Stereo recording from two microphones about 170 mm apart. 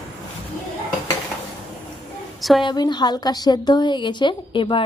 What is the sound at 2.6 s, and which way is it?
A woman's voice, 25° left (ahead or behind).